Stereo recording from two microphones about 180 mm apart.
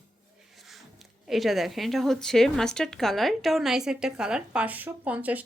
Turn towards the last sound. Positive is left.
turn(degrees=-10)  # may be behind; listen again after turning